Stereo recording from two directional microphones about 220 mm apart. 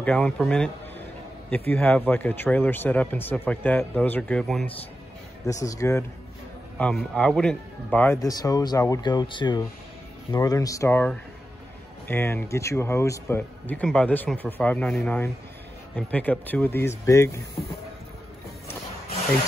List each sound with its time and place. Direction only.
0.0 s a man's voice: 5° left (ahead or behind)
5.4 s speech: 15° left (ahead or behind)